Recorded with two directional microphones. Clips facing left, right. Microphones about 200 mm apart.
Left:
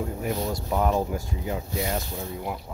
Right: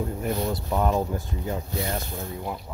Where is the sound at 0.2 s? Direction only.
5° left (ahead or behind).